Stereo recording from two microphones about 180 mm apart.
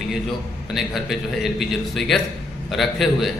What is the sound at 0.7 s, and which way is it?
A man's voice, centre (ahead or behind).